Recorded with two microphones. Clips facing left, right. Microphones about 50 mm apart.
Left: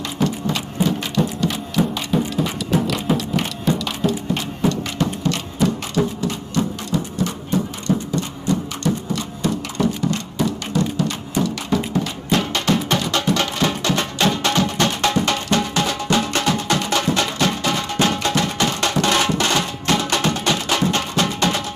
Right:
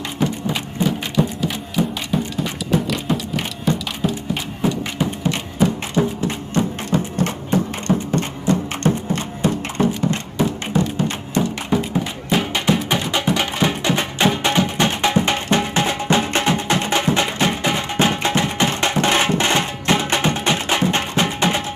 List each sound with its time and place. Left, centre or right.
0.2 s music: centre
2.0 s a sound: centre; by 7.9 s right
8.1 s music: right
11.9 s music: centre